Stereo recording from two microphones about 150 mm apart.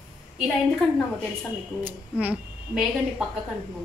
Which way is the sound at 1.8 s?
10° right (ahead or behind).